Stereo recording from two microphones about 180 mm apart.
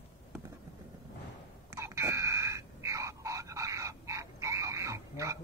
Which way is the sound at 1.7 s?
15° right (ahead or behind).